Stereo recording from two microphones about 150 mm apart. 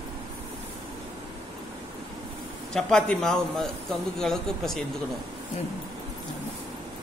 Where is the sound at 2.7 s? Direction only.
5° left (ahead or behind).